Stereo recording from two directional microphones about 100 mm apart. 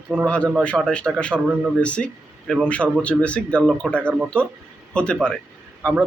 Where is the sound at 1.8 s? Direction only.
10° left (ahead or behind).